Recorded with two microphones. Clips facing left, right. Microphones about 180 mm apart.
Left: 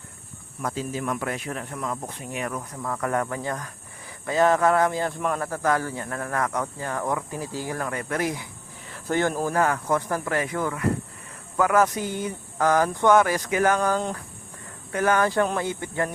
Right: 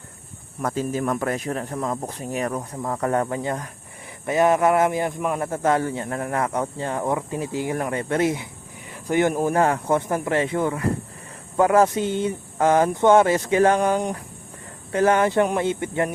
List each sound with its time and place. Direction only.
0.6 s speech: 45° right (ahead or behind); by 9.6 s 20° right (ahead or behind)
9.6 s speech: 30° right (ahead or behind)
13.9 s speech: 15° right (ahead or behind)
14.9 s speech: 30° right (ahead or behind)